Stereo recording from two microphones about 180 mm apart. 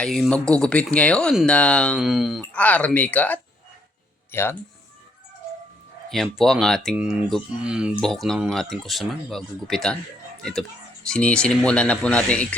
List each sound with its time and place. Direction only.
0.0 s speech: 5° left (ahead or behind)
6.1 s speech: centre (ahead or behind)